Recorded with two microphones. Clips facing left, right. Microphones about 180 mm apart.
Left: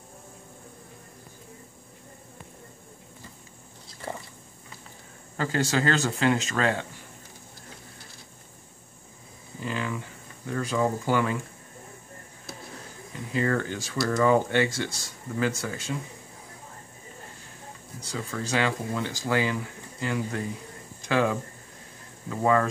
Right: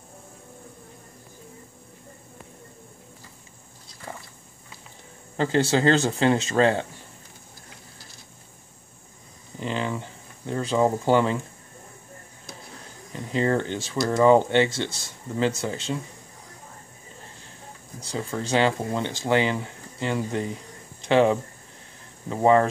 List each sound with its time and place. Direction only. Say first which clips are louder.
5.4 s speech: right 5 dB; 25° right (ahead or behind)
9.6 s a sound: right 3 dB; 25° right (ahead or behind)
13.3 s speech: right 3 dB; 25° right (ahead or behind)
18.0 s speech: right 3 dB; 30° right (ahead or behind)